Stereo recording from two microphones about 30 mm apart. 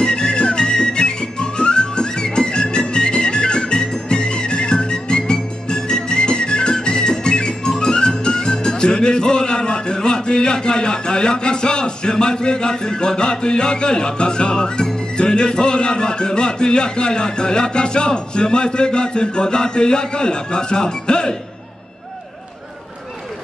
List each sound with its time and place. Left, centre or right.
0.0 s music: left